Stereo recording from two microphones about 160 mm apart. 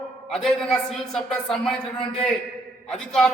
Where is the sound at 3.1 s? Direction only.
5° left (ahead or behind).